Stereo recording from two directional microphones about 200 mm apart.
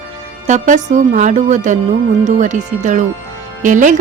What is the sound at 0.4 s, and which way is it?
A woman's voice, 40° right (ahead or behind).